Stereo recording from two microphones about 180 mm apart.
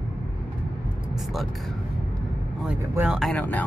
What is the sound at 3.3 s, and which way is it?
Speech, 10° left (ahead or behind).